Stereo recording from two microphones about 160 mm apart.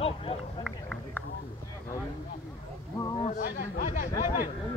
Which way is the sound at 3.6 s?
55° left (ahead or behind).